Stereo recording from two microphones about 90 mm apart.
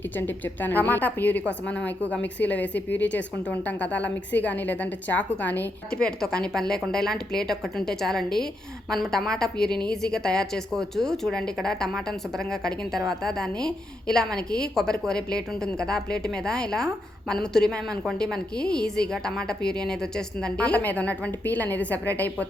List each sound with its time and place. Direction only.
0.2 s a woman's voice: 20° left (ahead or behind)